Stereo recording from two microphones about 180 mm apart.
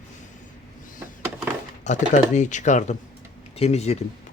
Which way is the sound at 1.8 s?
40° left (ahead or behind).